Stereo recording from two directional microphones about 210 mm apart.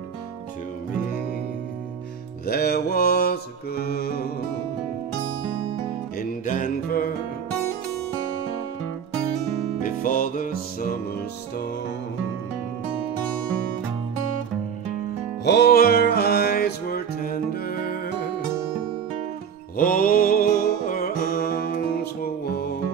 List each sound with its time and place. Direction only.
2.4 s mantra: 45° left (ahead or behind)
6.1 s music: 40° left (ahead or behind)
9.8 s music: 40° left (ahead or behind)
15.4 s music: 50° left (ahead or behind)
19.8 s music: 45° left (ahead or behind)